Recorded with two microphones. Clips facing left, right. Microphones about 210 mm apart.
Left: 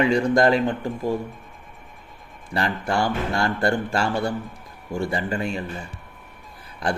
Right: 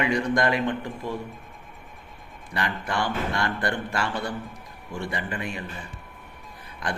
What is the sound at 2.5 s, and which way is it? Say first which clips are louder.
Speech: left 5 dB; 30° left (ahead or behind).